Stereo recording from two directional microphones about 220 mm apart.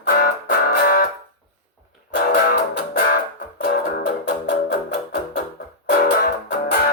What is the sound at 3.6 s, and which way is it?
Music, 45° left (ahead or behind).